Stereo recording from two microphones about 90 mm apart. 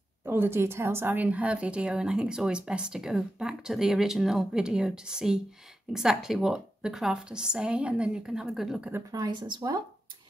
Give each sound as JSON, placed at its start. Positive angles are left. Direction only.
{"t": 0.2, "sound": "a woman's voice", "side_deg": -25}
{"t": 9.6, "sound": "speech", "side_deg": -55}